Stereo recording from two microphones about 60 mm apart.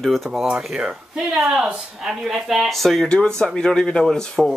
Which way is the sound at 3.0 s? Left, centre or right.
Centre.